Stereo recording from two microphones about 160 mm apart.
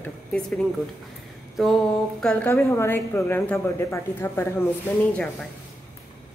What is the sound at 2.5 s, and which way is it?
A woman's voice, 15° left (ahead or behind).